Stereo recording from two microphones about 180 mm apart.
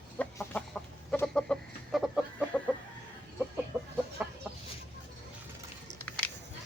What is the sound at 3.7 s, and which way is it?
Chicken, centre (ahead or behind).